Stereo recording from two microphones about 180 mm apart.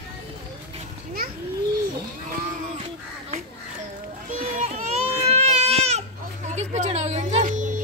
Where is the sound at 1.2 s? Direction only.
55° right (ahead or behind).